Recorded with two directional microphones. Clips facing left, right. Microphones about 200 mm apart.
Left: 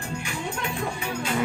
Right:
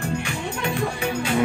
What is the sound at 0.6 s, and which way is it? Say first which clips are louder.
Music: right 5 dB; 80° right.